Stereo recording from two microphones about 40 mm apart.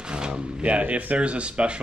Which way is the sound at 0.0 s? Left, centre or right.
Right.